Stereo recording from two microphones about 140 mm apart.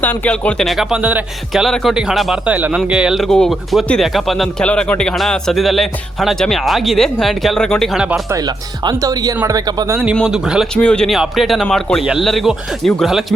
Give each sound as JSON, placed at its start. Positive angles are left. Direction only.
{"t": 0.0, "sound": "speech", "side_deg": 10}
{"t": 8.3, "sound": "speech", "side_deg": -30}
{"t": 10.2, "sound": "speech", "side_deg": -5}
{"t": 10.8, "sound": "speech", "side_deg": 5}